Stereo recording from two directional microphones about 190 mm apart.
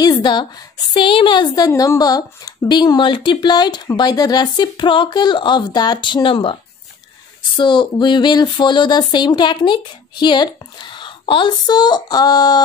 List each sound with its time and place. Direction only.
0.0 s a woman's voice: 25° left (ahead or behind)